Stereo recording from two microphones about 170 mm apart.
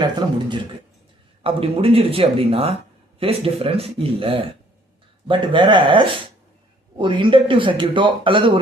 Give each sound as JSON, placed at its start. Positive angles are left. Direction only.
{"t": 0.0, "sound": "speech", "side_deg": -25}